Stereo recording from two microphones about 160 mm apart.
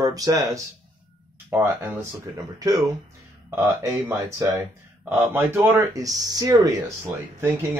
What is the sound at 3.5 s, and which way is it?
Speech, 15° right (ahead or behind).